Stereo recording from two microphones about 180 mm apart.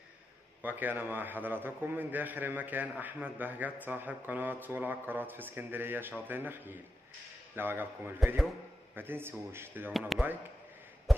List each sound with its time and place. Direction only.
0.6 s a man's voice: 10° right (ahead or behind)
9.9 s speech: centre (ahead or behind)
11.1 s a sound: centre (ahead or behind)